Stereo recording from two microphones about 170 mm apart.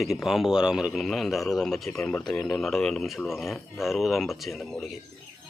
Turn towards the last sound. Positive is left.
turn(degrees=0)  # may be behind; listen again after turning